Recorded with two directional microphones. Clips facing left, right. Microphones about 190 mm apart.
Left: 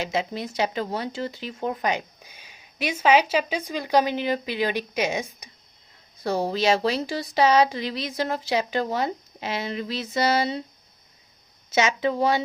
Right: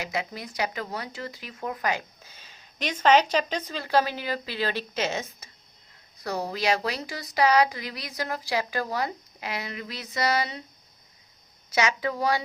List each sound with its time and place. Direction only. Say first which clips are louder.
0.0 s speech: left 5 dB; 25° left (ahead or behind)
6.2 s speech: left 5 dB; 30° left (ahead or behind)
11.7 s speech: left 4 dB; 25° left (ahead or behind)